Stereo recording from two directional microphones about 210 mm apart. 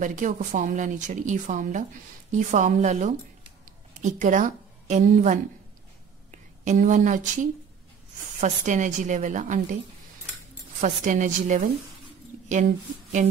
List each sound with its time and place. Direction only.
0.0 s a woman's voice: 35° right (ahead or behind)
10.8 s a woman's voice: 35° right (ahead or behind)